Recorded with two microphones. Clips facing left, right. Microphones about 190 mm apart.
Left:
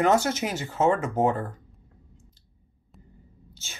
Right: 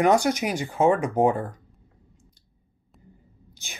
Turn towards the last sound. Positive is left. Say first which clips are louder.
# right 2 dB
turn(degrees=-15)  # may be behind; listen again after turning